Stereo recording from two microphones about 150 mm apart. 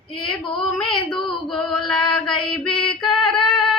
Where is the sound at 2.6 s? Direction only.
35° left (ahead or behind).